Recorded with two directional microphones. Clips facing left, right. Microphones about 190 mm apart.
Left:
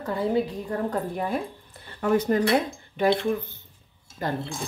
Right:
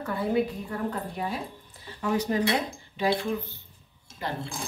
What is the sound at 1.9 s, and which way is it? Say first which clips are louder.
Speech: left 5 dB; 55° left (ahead or behind).